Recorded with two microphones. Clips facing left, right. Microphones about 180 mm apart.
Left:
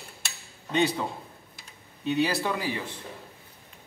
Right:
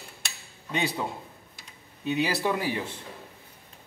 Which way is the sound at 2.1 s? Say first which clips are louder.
Left 1 dB; 15° right (ahead or behind).